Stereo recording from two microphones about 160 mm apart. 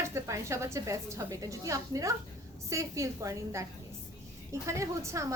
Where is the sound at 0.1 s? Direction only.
20° right (ahead or behind).